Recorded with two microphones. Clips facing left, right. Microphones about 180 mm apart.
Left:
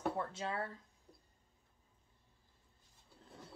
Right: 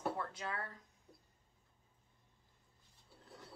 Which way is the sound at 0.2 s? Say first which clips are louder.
Left 3 dB; 25° left (ahead or behind).